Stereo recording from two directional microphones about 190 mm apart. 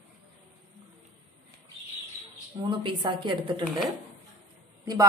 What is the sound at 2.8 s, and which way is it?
Speech, 25° right (ahead or behind).